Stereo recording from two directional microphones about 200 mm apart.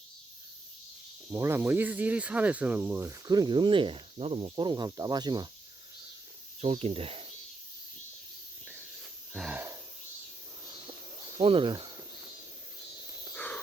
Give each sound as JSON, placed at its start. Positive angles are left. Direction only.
{"t": 1.3, "sound": "speech", "side_deg": -15}
{"t": 6.6, "sound": "speech", "side_deg": -30}
{"t": 9.3, "sound": "wheeze", "side_deg": -5}
{"t": 11.3, "sound": "speech", "side_deg": -25}
{"t": 13.3, "sound": "a sound", "side_deg": 10}